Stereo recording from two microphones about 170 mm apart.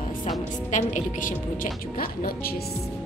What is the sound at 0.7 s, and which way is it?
A woman's voice, 45° left (ahead or behind).